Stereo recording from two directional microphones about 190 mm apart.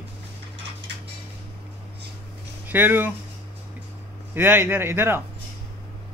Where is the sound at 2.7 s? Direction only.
10° right (ahead or behind).